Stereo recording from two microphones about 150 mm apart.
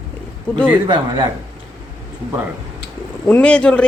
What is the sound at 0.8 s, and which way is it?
Speech, 30° right (ahead or behind).